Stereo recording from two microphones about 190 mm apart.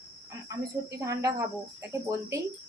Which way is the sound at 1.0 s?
15° right (ahead or behind).